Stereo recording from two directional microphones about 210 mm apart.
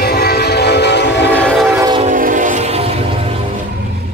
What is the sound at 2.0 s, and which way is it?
Train, 40° right (ahead or behind).